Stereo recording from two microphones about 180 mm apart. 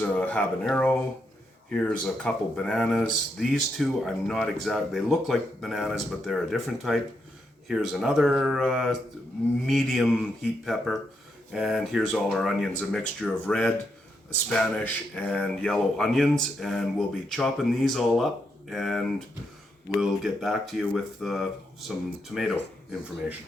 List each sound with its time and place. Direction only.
0.0 s speech: 10° left (ahead or behind)